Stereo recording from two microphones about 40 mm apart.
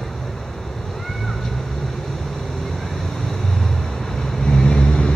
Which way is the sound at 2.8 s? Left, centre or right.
Centre.